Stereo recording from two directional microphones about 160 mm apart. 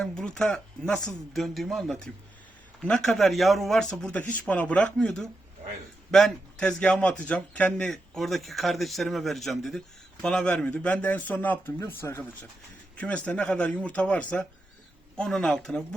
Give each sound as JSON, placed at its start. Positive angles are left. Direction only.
{"t": 0.0, "sound": "a man's voice", "side_deg": 5}